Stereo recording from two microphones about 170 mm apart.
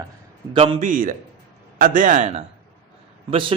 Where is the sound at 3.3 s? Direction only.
30° right (ahead or behind).